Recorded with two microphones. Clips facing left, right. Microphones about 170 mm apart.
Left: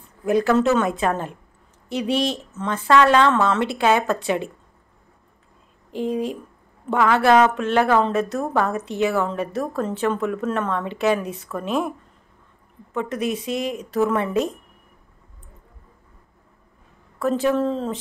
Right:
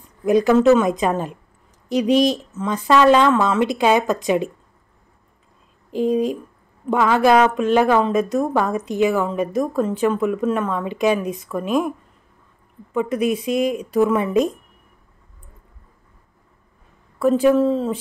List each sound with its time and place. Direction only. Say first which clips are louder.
0.2 s a woman's voice: right 4 dB; 15° right (ahead or behind)
6.0 s a woman's voice: right 5 dB; 15° right (ahead or behind)
12.9 s a woman's voice: right 5 dB; 10° right (ahead or behind)
17.2 s a woman's voice: right 5 dB; 10° right (ahead or behind)